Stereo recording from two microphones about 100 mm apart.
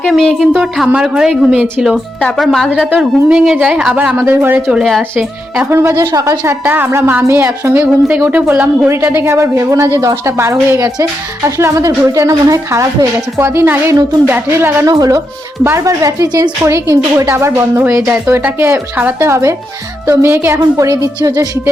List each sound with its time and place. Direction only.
0.1 s a woman's voice: centre (ahead or behind)
2.6 s a woman's voice: 10° right (ahead or behind)
7.9 s a woman's voice: 15° right (ahead or behind)
9.2 s a woman's voice: 30° right (ahead or behind)
14.8 s a woman's voice: 40° right (ahead or behind)
20.6 s speech: 35° right (ahead or behind)